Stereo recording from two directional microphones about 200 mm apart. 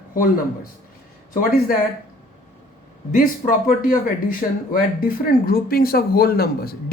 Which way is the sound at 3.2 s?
45° left (ahead or behind).